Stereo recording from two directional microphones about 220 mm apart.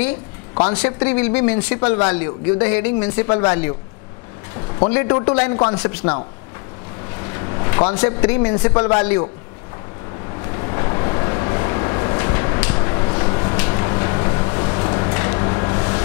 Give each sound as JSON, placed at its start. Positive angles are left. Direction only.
{"t": 0.7, "sound": "a man's voice", "side_deg": 15}
{"t": 4.9, "sound": "a man's voice", "side_deg": 20}
{"t": 5.8, "sound": "speech", "side_deg": 10}
{"t": 7.2, "sound": "a sound", "side_deg": 20}
{"t": 8.2, "sound": "a man's voice", "side_deg": 15}
{"t": 10.4, "sound": "vehicle", "side_deg": 20}
{"t": 12.6, "sound": "a sound", "side_deg": 20}